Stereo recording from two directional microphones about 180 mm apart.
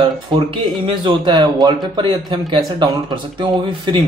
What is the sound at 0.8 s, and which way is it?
Speech, 30° right (ahead or behind).